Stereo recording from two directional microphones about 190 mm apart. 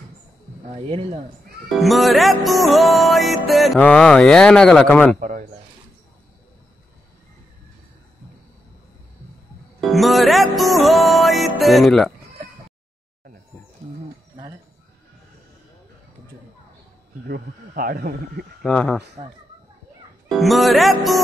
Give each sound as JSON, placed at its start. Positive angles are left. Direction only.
{"t": 0.7, "sound": "speech", "side_deg": -30}
{"t": 1.7, "sound": "music", "side_deg": 0}
{"t": 5.1, "sound": "a sound", "side_deg": -45}
{"t": 9.8, "sound": "music", "side_deg": 0}
{"t": 17.3, "sound": "speech", "side_deg": -50}
{"t": 18.6, "sound": "music", "side_deg": 5}
{"t": 19.2, "sound": "speech", "side_deg": -35}
{"t": 20.2, "sound": "music", "side_deg": 0}